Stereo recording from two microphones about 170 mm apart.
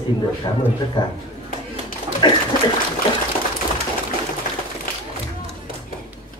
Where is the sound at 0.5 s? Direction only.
25° left (ahead or behind).